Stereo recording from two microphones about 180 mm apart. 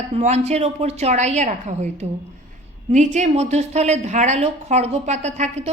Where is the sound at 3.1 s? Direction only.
40° right (ahead or behind).